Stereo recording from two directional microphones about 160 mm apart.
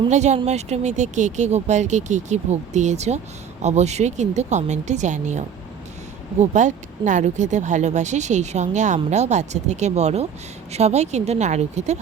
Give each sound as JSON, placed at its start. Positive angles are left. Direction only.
{"t": 0.1, "sound": "speech", "side_deg": -45}